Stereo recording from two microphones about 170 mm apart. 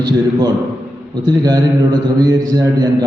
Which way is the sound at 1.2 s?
25° right (ahead or behind).